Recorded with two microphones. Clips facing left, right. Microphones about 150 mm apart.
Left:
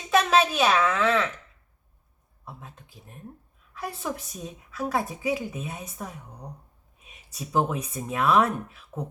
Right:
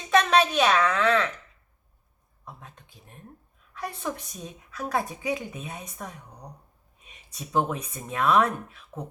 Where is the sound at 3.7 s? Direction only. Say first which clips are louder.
Even; 5° left (ahead or behind).